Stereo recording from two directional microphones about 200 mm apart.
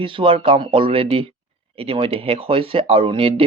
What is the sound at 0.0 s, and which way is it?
Speech, 25° right (ahead or behind).